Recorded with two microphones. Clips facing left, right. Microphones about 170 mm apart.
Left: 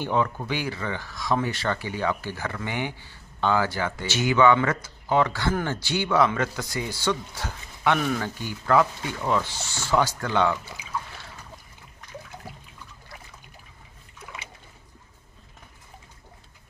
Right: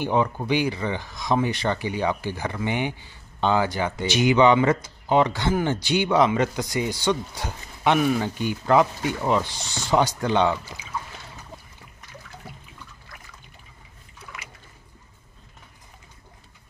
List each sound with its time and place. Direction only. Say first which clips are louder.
0.0 s speech: right 2 dB; 15° right (ahead or behind)